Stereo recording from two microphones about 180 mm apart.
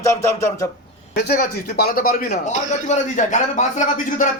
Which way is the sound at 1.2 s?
60° left (ahead or behind).